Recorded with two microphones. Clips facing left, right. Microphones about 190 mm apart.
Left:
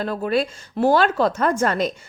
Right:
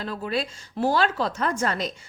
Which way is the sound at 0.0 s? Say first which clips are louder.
Left 7 dB; 55° left (ahead or behind).